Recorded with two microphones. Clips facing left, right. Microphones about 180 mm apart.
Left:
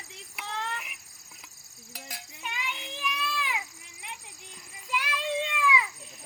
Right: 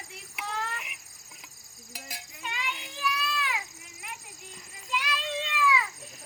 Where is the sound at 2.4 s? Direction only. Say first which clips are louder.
Right 1 dB; 15° left (ahead or behind).